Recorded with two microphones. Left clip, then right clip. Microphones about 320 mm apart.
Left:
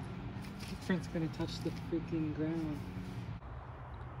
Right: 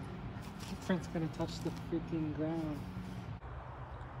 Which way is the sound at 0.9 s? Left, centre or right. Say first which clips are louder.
Even; centre.